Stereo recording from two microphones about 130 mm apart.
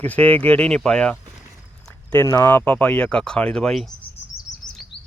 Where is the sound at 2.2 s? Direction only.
30° left (ahead or behind).